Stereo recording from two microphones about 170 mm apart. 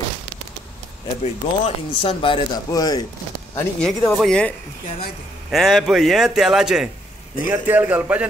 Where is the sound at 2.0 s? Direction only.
30° left (ahead or behind).